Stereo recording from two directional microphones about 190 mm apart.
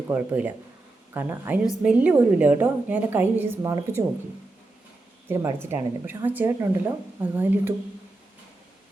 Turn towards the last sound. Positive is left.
turn(degrees=-10)  # may be behind; listen again after turning